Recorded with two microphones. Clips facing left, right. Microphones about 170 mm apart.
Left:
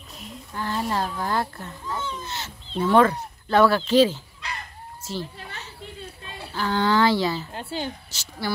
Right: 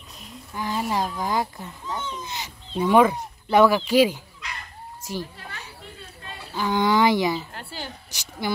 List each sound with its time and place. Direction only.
0.6 s a child's voice: 10° right (ahead or behind)
4.4 s dog: 30° left (ahead or behind)
5.0 s a child's voice: 15° right (ahead or behind)
7.5 s a woman's voice: 20° left (ahead or behind)
8.1 s a child's voice: 15° right (ahead or behind)